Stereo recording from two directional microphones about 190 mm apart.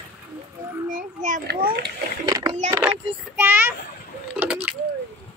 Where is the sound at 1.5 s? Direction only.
60° right (ahead or behind).